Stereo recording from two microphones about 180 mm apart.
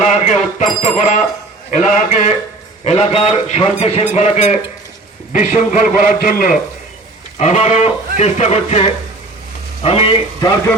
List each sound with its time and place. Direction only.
0.3 s a man's voice: 45° left (ahead or behind)
7.3 s a man's voice: 40° left (ahead or behind)